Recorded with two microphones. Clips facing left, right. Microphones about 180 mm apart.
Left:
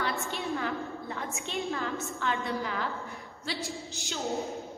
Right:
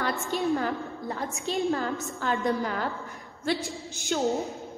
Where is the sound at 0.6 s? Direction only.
40° right (ahead or behind).